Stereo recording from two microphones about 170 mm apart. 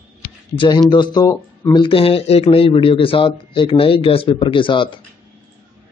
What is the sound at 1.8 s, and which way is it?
A man's voice, 30° left (ahead or behind).